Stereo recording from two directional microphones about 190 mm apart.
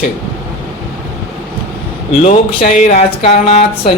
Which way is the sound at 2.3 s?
40° left (ahead or behind).